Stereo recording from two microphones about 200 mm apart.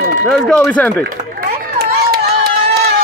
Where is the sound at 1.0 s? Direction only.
45° right (ahead or behind).